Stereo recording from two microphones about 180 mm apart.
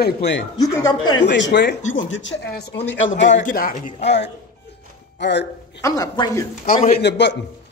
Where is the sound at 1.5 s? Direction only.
70° left (ahead or behind).